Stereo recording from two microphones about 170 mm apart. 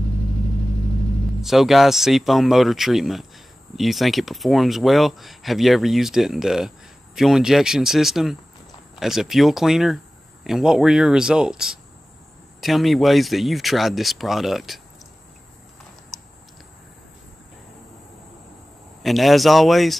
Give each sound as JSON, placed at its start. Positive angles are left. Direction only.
{"t": 1.4, "sound": "speech", "side_deg": 0}
{"t": 19.0, "sound": "speech", "side_deg": 0}